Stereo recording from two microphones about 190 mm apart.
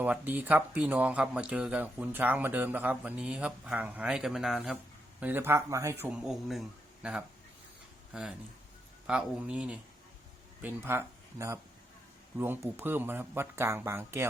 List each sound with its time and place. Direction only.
0.0 s speech: 10° right (ahead or behind)